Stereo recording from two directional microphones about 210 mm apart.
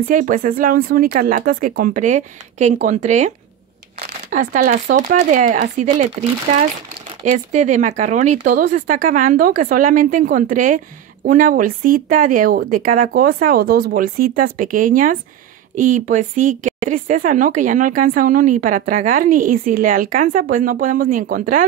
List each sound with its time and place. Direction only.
0.1 s a woman's voice: 40° right (ahead or behind)
7.2 s a woman's voice: 35° right (ahead or behind)